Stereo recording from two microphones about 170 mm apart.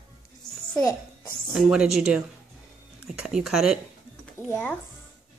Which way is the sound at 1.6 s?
5° right (ahead or behind).